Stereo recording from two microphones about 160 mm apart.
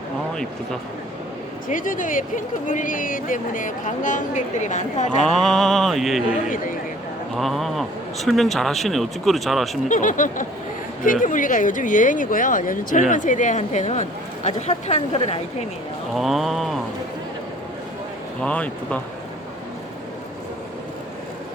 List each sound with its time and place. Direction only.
1.6 s speech: 55° left (ahead or behind)
5.2 s speech: centre (ahead or behind)
7.3 s speech: centre (ahead or behind)
9.9 s speech: 55° left (ahead or behind); by 15.4 s 40° left (ahead or behind)
16.1 s speech: centre (ahead or behind)
18.4 s speech: 10° left (ahead or behind)